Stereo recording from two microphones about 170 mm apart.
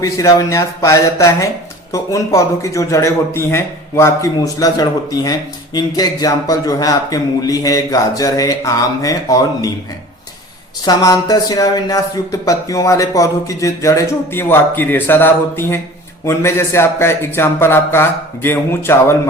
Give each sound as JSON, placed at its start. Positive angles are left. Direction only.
{"t": 0.0, "sound": "a man's voice", "side_deg": 20}
{"t": 10.8, "sound": "a man's voice", "side_deg": 20}